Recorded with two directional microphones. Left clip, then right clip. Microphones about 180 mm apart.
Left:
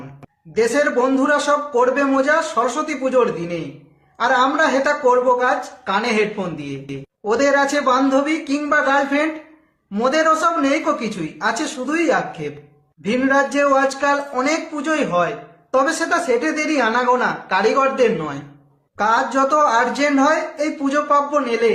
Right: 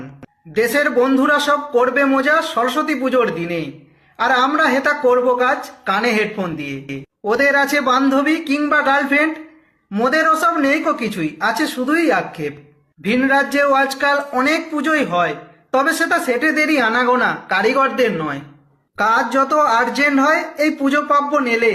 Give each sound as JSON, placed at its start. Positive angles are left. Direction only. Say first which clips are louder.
{"t": 0.5, "sound": "a man's voice", "louder": "right 1 dB", "side_deg": -15}